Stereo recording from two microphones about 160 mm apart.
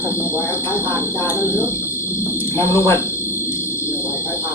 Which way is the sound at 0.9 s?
15° left (ahead or behind).